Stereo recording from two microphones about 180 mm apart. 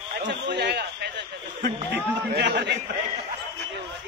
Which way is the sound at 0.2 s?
70° right (ahead or behind).